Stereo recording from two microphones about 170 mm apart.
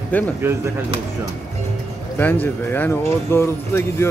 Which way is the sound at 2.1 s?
10° left (ahead or behind).